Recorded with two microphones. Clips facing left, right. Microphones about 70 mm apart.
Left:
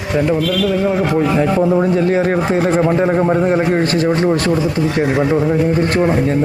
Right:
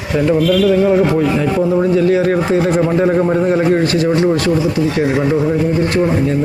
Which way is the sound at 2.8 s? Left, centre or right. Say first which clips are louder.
Right 1 dB; centre.